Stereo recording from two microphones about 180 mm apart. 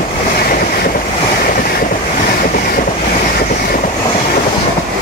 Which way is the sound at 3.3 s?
55° left (ahead or behind).